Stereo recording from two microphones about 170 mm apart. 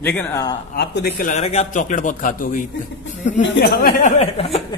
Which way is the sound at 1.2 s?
40° left (ahead or behind).